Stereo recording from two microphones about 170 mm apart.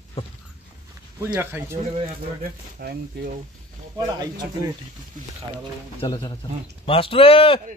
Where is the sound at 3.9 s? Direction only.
20° right (ahead or behind).